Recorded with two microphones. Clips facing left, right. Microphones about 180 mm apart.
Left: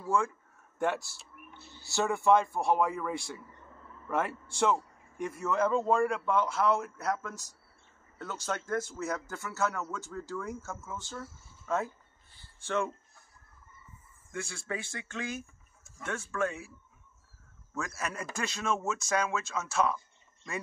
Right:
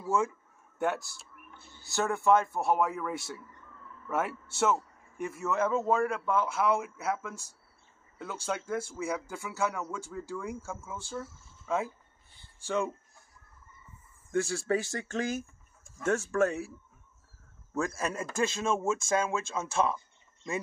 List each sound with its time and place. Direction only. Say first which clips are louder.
0.1 s speech: right 1 dB; 20° right (ahead or behind)
0.7 s a sound: even; centre (ahead or behind)
1.9 s a man's voice: even; centre (ahead or behind)
8.5 s speech: even; 10° right (ahead or behind)
14.3 s speech: right 9 dB; 40° right (ahead or behind)
17.7 s speech: right 5 dB; 30° right (ahead or behind)